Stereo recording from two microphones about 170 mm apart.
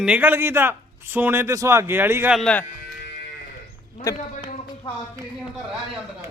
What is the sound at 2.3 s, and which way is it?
Speech, 5° left (ahead or behind).